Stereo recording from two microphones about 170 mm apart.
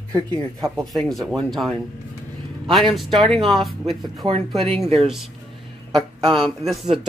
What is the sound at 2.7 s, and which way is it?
Speech, centre (ahead or behind).